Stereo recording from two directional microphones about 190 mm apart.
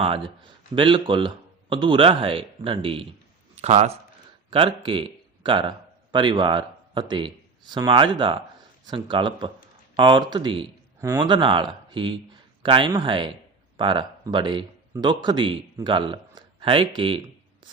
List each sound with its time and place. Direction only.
0.0 s a man's voice: 30° right (ahead or behind)